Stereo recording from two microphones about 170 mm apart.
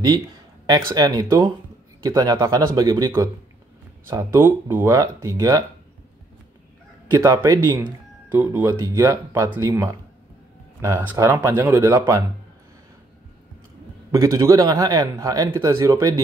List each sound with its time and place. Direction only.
0.7 s speech: 20° right (ahead or behind)
7.1 s speech: 20° right (ahead or behind)
11.0 s speech: 10° right (ahead or behind)
14.1 s speech: 20° right (ahead or behind)